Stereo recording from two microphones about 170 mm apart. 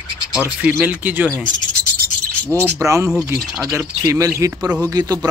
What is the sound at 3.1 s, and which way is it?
Speech, centre (ahead or behind).